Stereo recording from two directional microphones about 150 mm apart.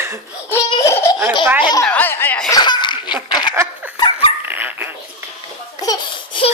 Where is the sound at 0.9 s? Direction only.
20° left (ahead or behind).